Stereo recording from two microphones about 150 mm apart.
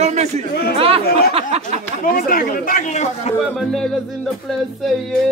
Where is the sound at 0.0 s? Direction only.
45° right (ahead or behind).